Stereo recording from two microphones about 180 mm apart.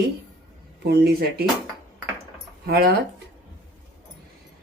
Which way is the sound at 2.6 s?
60° right (ahead or behind).